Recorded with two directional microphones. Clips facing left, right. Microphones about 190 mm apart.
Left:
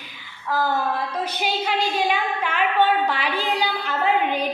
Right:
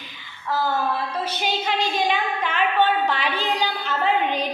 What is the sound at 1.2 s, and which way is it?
A woman's voice, 10° left (ahead or behind).